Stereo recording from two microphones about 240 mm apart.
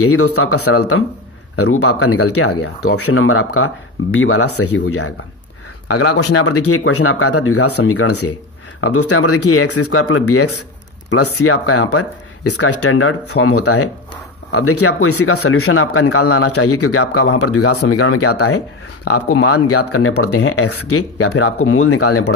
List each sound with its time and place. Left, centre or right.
0.0 s a man's voice: left